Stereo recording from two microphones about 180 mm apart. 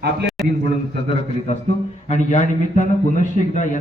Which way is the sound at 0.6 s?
35° left (ahead or behind).